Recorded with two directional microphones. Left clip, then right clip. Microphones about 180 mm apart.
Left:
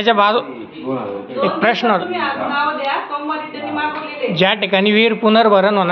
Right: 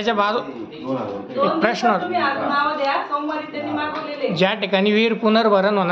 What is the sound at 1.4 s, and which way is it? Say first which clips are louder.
Speech: left 3 dB; 15° left (ahead or behind).